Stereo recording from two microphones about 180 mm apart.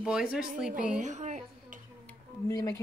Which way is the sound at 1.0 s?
40° right (ahead or behind).